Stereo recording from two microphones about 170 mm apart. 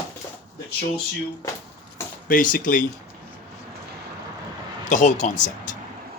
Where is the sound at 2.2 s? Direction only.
55° left (ahead or behind).